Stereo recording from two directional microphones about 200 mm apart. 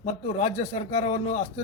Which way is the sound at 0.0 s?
35° left (ahead or behind).